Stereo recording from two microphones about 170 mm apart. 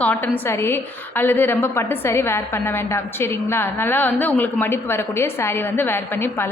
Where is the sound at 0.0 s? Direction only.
10° left (ahead or behind).